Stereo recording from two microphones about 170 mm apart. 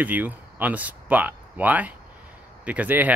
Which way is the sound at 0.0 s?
10° right (ahead or behind).